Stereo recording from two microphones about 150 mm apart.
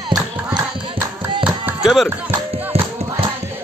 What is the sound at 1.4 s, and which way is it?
Chop, 5° right (ahead or behind).